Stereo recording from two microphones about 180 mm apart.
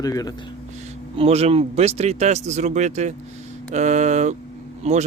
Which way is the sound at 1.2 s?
35° right (ahead or behind).